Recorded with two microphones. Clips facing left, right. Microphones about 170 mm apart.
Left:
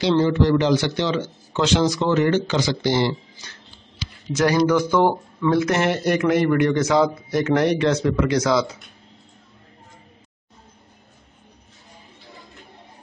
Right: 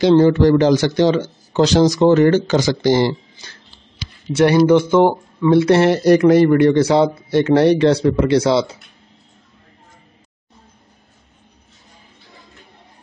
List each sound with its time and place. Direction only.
0.0 s speech: 45° right (ahead or behind)
4.3 s speech: 25° right (ahead or behind)
5.6 s a man's voice: 30° right (ahead or behind)